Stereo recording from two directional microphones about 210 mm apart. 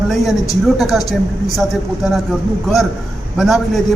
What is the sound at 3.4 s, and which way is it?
Speech, centre (ahead or behind).